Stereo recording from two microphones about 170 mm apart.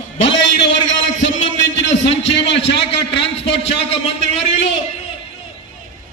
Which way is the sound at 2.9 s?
35° left (ahead or behind).